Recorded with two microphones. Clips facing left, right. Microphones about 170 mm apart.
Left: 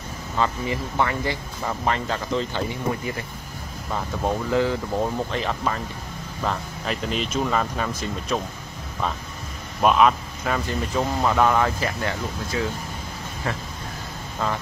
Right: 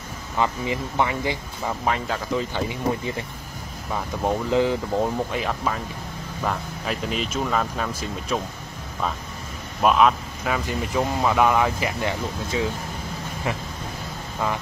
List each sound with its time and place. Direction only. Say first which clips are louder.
0.4 s speech: even; 15° right (ahead or behind)
1.7 s speech: even; 5° right (ahead or behind)
9.8 s speech: even; centre (ahead or behind); by 12.6 s 20° right (ahead or behind)